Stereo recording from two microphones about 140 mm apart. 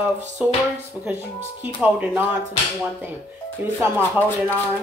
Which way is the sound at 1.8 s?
10° right (ahead or behind).